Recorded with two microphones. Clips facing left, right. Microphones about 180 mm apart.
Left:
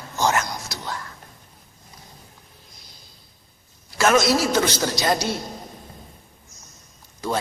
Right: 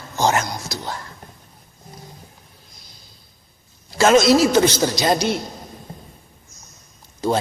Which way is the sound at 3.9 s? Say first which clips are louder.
Right 5 dB; 25° right (ahead or behind).